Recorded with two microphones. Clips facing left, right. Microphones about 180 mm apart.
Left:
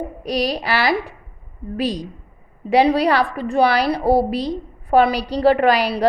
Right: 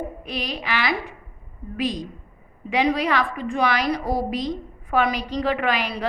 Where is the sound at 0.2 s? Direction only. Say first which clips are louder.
Left 9 dB; 40° left (ahead or behind).